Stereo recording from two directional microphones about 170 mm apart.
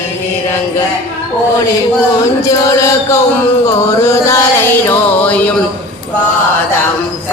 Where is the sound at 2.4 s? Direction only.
20° left (ahead or behind).